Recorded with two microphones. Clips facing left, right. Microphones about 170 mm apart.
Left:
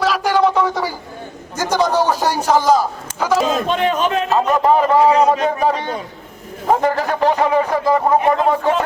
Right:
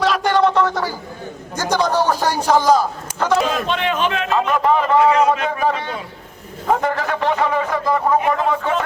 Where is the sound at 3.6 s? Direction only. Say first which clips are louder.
Left 3 dB; 40° left (ahead or behind).